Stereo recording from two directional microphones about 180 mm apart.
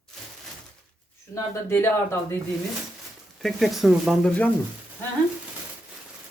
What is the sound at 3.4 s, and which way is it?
Speech, centre (ahead or behind).